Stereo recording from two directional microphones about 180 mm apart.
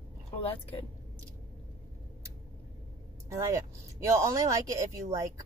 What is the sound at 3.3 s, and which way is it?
Speech, 15° right (ahead or behind).